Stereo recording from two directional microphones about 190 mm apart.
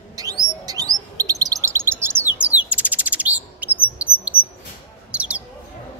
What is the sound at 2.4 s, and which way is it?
Chirp, 5° right (ahead or behind).